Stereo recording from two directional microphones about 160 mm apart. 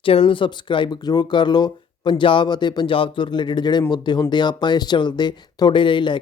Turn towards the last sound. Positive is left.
turn(degrees=30)  # may be behind; listen again after turning